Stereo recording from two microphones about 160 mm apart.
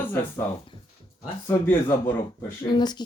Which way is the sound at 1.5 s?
15° left (ahead or behind).